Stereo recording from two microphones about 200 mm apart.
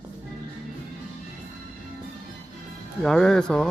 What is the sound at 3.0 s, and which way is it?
Speech, centre (ahead or behind).